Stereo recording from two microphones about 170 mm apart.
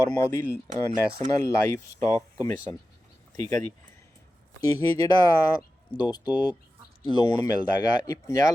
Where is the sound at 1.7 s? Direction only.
20° left (ahead or behind).